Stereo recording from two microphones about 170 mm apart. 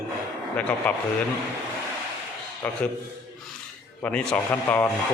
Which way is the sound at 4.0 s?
10° left (ahead or behind).